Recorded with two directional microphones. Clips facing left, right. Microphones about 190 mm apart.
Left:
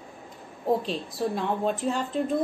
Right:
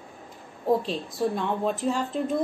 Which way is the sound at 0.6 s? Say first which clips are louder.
Right 1 dB; centre (ahead or behind).